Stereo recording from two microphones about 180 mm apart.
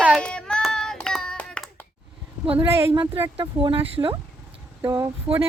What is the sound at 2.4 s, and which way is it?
Speech, 30° right (ahead or behind).